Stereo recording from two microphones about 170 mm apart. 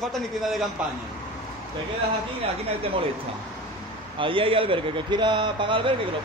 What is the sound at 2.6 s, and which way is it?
Speech, 35° right (ahead or behind).